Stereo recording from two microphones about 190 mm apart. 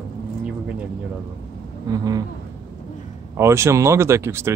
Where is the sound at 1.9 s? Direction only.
20° right (ahead or behind).